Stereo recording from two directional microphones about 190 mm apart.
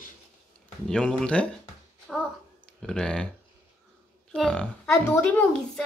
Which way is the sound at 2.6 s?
5° left (ahead or behind).